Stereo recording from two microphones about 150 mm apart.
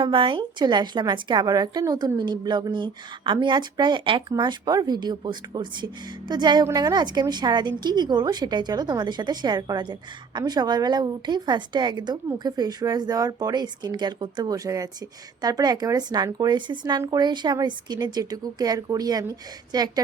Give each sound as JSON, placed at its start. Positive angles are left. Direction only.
{"t": 0.0, "sound": "a woman's voice", "side_deg": -35}